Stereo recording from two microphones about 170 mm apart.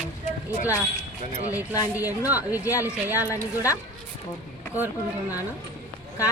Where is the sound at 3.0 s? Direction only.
10° right (ahead or behind).